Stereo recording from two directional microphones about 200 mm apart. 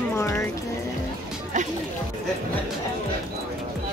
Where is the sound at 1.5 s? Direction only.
40° right (ahead or behind).